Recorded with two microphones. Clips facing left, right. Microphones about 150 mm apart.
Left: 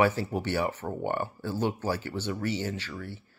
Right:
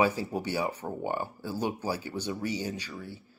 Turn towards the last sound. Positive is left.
turn(degrees=-15)  # may be behind; listen again after turning